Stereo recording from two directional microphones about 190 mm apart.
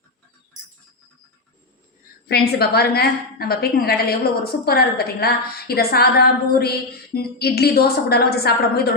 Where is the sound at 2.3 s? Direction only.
55° left (ahead or behind).